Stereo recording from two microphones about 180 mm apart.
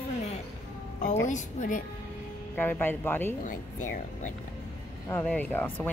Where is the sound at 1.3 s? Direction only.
45° left (ahead or behind).